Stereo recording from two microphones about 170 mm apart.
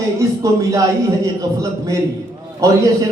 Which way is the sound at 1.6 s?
15° right (ahead or behind).